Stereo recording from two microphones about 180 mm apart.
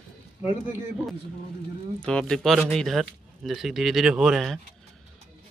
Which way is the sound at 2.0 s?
5° left (ahead or behind).